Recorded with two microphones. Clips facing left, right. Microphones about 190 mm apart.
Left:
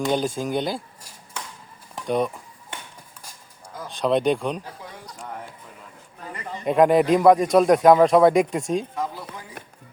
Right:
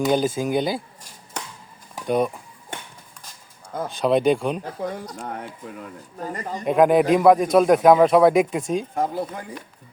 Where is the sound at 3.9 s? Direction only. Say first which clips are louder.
Right 2 dB; 5° right (ahead or behind).